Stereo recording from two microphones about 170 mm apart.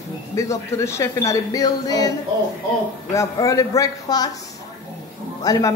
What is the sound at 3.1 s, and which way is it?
Speech, 20° left (ahead or behind).